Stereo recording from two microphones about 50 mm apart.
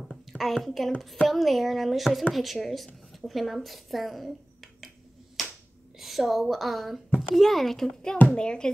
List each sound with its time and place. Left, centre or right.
0.3 s a sound: centre
0.7 s speech: centre
5.9 s speech: centre